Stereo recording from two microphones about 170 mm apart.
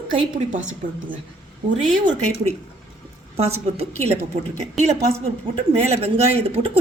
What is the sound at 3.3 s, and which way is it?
A woman's voice, 35° right (ahead or behind).